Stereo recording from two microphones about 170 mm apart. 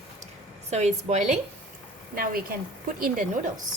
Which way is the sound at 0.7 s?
40° right (ahead or behind).